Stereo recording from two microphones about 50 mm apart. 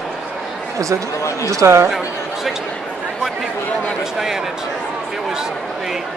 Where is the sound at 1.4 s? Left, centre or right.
Right.